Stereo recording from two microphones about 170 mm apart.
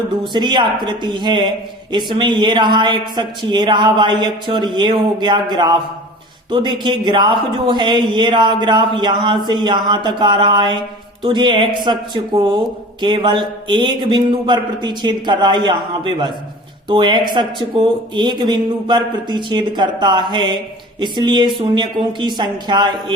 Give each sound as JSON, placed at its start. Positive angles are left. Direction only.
{"t": 0.1, "sound": "speech", "side_deg": -25}